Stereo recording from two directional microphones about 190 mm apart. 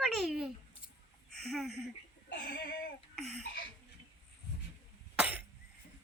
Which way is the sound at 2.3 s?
55° left (ahead or behind).